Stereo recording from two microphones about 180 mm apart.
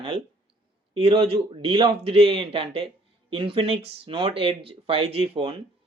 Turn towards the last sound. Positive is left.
turn(degrees=-30)  # may be behind; listen again after turning